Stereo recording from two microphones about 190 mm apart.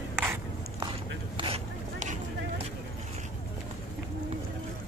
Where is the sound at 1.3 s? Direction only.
30° right (ahead or behind).